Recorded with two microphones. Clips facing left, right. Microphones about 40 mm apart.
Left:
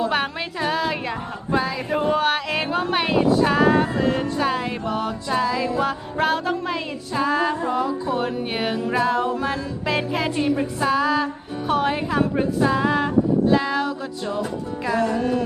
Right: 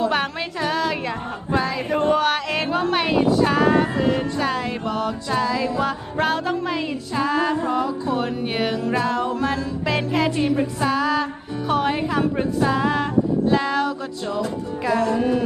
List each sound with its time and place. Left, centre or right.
0.0 s a woman's voice: centre
1.5 s music: centre
15.1 s speech: centre